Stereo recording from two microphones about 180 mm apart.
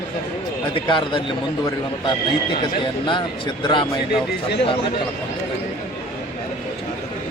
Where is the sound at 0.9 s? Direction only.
25° left (ahead or behind).